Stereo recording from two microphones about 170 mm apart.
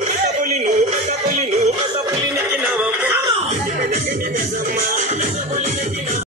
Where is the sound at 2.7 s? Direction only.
10° right (ahead or behind).